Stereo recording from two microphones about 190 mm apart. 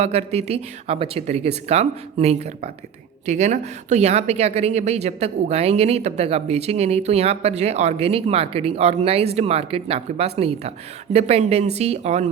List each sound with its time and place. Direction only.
0.0 s a woman's voice: 35° right (ahead or behind)